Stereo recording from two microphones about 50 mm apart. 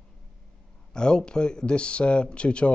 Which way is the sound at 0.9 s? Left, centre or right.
Centre.